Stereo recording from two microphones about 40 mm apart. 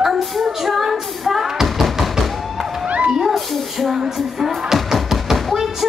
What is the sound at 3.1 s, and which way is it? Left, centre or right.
Cat, centre.